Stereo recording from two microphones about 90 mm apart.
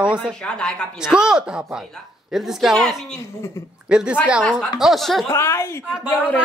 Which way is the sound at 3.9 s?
10° right (ahead or behind).